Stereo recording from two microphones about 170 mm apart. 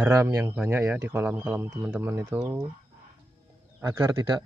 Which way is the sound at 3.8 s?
20° right (ahead or behind).